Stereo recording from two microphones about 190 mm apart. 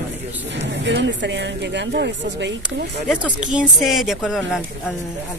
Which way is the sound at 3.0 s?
5° right (ahead or behind).